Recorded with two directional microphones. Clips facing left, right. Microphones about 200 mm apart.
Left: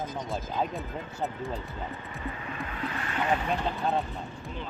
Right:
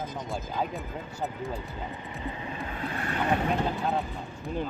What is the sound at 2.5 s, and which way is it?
Vehicle, 25° right (ahead or behind).